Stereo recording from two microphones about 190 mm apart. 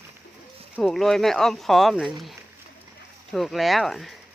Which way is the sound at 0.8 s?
Centre (ahead or behind).